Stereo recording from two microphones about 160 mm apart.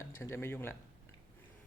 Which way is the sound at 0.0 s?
15° left (ahead or behind).